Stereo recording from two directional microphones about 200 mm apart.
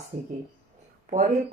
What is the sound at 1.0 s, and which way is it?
Speech, 35° right (ahead or behind).